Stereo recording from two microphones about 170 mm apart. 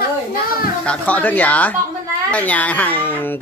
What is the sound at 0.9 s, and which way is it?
A child's voice, 10° left (ahead or behind).